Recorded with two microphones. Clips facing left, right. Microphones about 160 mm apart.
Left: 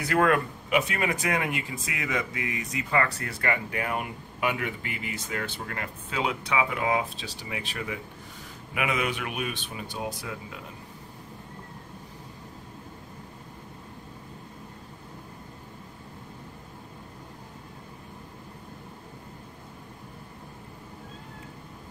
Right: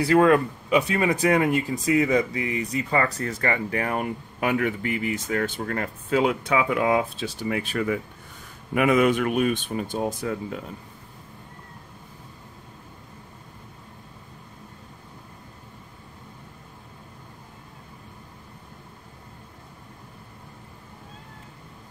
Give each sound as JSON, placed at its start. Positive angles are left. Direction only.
{"t": 0.0, "sound": "speech", "side_deg": -25}